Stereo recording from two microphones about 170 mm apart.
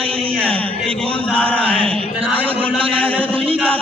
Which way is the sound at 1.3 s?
5° left (ahead or behind).